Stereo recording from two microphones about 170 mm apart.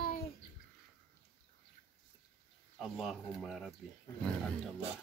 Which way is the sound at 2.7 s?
Centre (ahead or behind).